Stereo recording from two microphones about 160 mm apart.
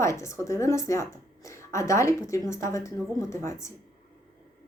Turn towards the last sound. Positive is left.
turn(degrees=20)  # may be behind; listen again after turning